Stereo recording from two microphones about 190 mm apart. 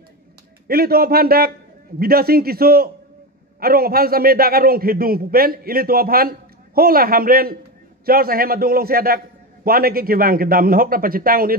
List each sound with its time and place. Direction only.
0.7 s a man's voice: 55° right (ahead or behind)